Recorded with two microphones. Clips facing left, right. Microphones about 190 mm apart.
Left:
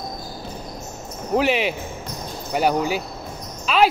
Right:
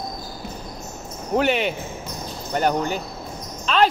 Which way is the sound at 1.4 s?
Centre (ahead or behind).